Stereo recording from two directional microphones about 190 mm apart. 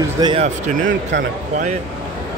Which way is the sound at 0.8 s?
70° right (ahead or behind).